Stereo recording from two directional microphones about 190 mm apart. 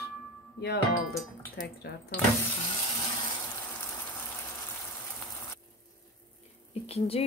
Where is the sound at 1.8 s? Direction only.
55° left (ahead or behind).